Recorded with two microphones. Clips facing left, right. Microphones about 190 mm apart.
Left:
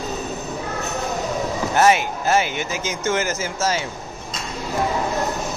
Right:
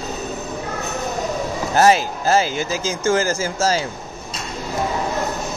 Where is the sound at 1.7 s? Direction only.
35° right (ahead or behind).